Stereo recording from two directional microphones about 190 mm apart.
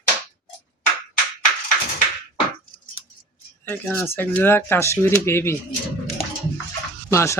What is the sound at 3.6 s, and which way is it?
Speech, 10° left (ahead or behind).